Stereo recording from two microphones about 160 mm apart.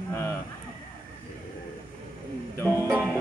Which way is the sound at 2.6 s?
15° left (ahead or behind).